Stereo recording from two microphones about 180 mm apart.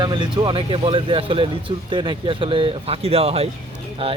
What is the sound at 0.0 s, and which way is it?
Speech, 25° right (ahead or behind).